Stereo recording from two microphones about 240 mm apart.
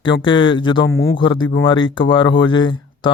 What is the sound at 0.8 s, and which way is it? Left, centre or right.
Speech, left.